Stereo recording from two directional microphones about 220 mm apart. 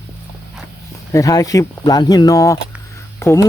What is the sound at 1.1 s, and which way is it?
Speech, 15° left (ahead or behind).